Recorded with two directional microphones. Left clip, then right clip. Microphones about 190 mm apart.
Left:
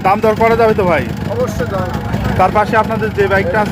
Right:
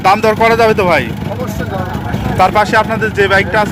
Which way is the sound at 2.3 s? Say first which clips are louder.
Right 2 dB; 5° right (ahead or behind).